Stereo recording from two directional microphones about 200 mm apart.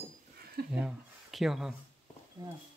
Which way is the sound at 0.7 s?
5° right (ahead or behind).